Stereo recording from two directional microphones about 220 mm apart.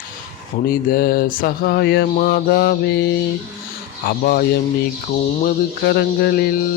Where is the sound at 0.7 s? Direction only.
40° left (ahead or behind).